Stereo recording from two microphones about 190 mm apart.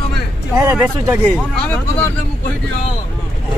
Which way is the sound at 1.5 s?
10° left (ahead or behind).